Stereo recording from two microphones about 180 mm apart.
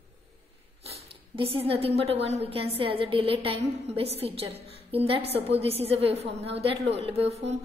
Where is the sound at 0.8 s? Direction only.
30° right (ahead or behind).